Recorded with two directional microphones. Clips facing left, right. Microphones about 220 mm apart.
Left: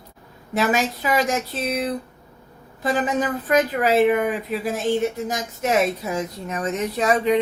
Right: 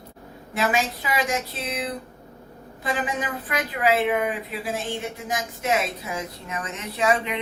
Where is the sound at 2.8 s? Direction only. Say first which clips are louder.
Left 6 dB; 40° left (ahead or behind).